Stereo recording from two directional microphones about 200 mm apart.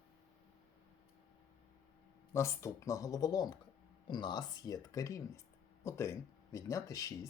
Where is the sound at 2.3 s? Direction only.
15° left (ahead or behind).